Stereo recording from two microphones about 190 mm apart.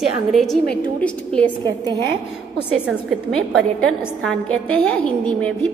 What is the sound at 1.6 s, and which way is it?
Speech, 20° right (ahead or behind).